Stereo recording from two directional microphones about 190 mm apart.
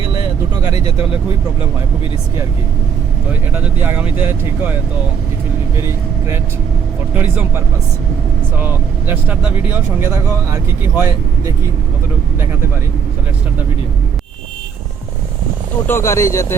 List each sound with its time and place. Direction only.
0.1 s vehicle: 20° right (ahead or behind)
0.7 s speech: 30° left (ahead or behind)
3.5 s speech: 10° right (ahead or behind)
5.7 s speech: 15° right (ahead or behind)
8.6 s speech: 10° right (ahead or behind)
15.9 s speech: 15° left (ahead or behind)